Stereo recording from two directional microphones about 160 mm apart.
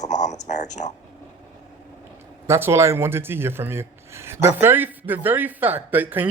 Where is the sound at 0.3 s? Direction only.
45° left (ahead or behind).